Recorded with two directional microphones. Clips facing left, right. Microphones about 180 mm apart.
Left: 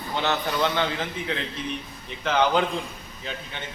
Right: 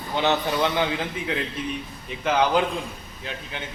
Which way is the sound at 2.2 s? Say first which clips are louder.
Right 1 dB; 10° right (ahead or behind).